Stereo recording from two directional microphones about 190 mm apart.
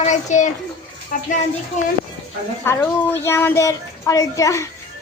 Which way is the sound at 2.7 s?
10° left (ahead or behind).